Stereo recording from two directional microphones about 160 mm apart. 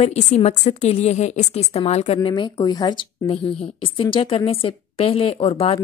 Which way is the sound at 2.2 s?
30° left (ahead or behind).